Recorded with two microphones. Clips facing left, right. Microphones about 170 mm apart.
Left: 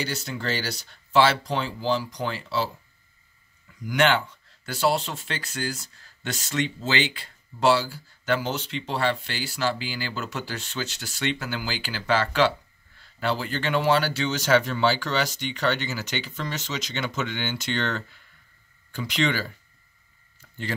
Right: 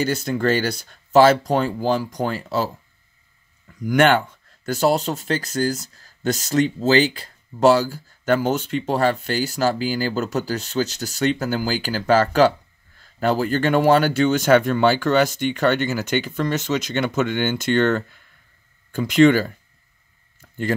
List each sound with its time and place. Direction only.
0.0 s speech: 50° right (ahead or behind)